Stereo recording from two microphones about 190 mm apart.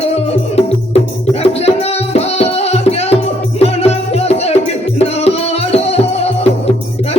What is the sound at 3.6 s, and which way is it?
Music, 35° left (ahead or behind).